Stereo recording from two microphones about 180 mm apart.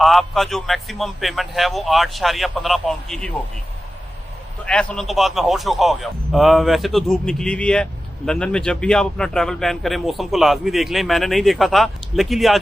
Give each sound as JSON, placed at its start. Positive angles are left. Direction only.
{"t": 0.0, "sound": "a man's voice", "side_deg": 0}
{"t": 4.6, "sound": "a man's voice", "side_deg": 5}